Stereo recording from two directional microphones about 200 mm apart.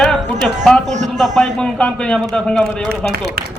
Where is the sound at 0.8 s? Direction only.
35° right (ahead or behind).